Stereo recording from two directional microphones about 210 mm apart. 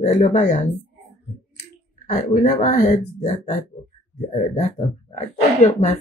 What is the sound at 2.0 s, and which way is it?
Speech, 35° left (ahead or behind).